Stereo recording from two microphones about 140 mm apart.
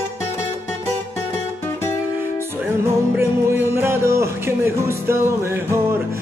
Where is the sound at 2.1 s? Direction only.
15° right (ahead or behind).